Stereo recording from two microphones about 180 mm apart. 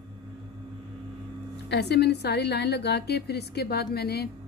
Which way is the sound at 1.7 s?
70° left (ahead or behind).